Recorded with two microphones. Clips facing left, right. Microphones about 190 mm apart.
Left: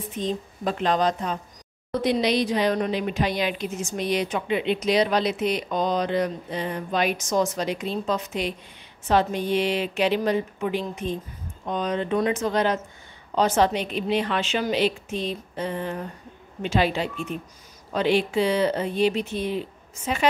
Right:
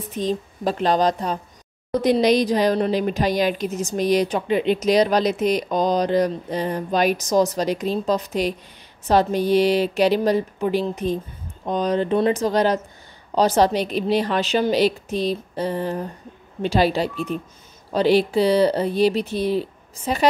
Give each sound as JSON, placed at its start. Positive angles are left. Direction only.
{"t": 0.7, "sound": "speech", "side_deg": -35}